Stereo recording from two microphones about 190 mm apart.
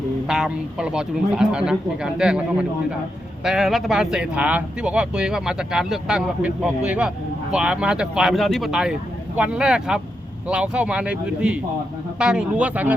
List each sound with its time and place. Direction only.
0.3 s speech: 5° right (ahead or behind)